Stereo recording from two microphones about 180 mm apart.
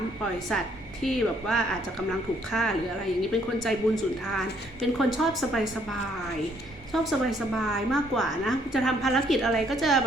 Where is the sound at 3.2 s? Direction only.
Centre (ahead or behind).